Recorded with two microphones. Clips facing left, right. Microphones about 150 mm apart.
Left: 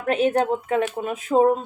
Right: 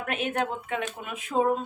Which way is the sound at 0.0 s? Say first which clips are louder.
Left 9 dB; 35° left (ahead or behind).